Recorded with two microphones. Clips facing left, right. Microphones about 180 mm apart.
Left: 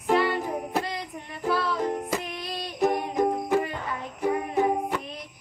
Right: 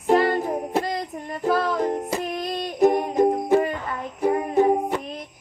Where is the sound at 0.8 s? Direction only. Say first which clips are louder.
Right 6 dB; 45° right (ahead or behind).